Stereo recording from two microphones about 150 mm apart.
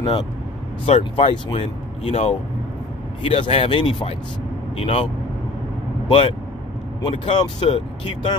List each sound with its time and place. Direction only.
0.8 s speech: 40° left (ahead or behind)
6.0 s speech: 35° left (ahead or behind)